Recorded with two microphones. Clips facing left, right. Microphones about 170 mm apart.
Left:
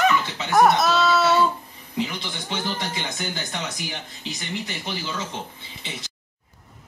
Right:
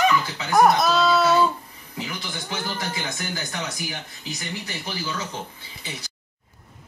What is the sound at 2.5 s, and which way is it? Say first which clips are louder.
Speech: left 2 dB; 25° left (ahead or behind).